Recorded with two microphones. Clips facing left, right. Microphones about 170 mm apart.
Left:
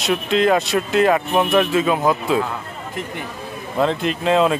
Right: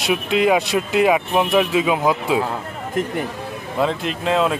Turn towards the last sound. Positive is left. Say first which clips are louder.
# left 2 dB
turn(degrees=0)  # may be behind; listen again after turning